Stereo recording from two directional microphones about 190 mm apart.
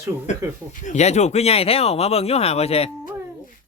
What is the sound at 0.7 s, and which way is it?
Speech, 40° left (ahead or behind).